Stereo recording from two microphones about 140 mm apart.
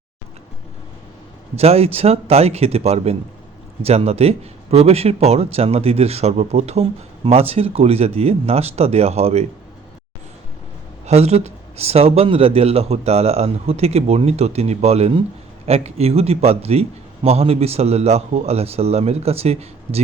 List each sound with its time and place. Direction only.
1.5 s speech: 45° right (ahead or behind)
11.0 s speech: 50° right (ahead or behind)